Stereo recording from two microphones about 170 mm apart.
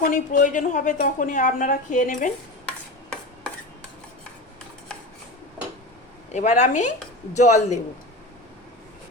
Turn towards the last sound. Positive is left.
turn(degrees=45)  # may be behind; listen again after turning